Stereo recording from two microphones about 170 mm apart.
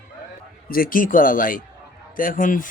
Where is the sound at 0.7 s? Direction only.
60° left (ahead or behind).